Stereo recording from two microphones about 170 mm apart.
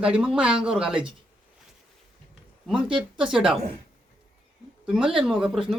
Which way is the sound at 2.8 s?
30° right (ahead or behind).